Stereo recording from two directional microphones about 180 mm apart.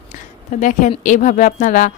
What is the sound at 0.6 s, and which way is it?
A woman's voice, 45° left (ahead or behind).